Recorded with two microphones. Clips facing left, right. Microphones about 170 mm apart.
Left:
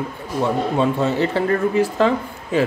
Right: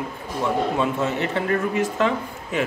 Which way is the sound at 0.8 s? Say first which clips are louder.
Left 4 dB; 35° left (ahead or behind).